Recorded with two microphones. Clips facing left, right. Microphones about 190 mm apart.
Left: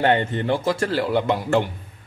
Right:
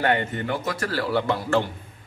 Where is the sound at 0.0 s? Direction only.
25° left (ahead or behind).